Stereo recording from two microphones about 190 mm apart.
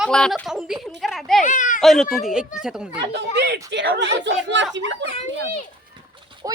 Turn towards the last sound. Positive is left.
turn(degrees=-20)  # may be behind; listen again after turning